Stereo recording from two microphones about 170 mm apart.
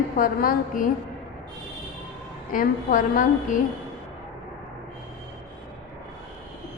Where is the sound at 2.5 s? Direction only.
55° left (ahead or behind).